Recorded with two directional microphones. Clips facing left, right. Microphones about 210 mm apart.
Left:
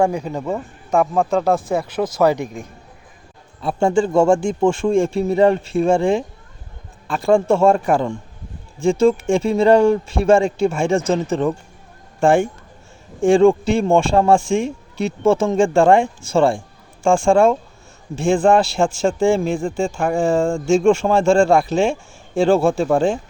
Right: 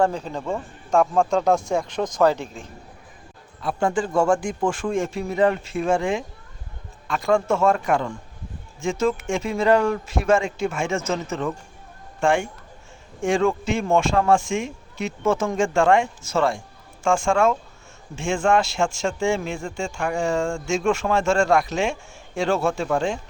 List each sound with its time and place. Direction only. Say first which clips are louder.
0.0 s speech: left 3 dB; 10° left (ahead or behind)
3.6 s a man's voice: left 6 dB; 25° left (ahead or behind)
13.2 s speech: left 8 dB; 30° left (ahead or behind)